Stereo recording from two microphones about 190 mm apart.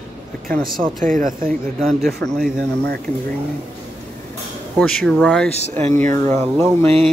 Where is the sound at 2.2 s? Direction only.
Centre (ahead or behind).